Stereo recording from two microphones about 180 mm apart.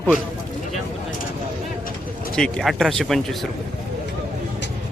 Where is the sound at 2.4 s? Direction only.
Centre (ahead or behind).